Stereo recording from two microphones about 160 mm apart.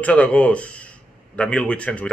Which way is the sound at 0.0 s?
10° left (ahead or behind).